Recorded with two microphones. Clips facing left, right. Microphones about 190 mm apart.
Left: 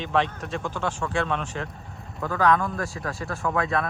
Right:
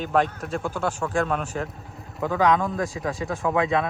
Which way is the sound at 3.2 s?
Centre (ahead or behind).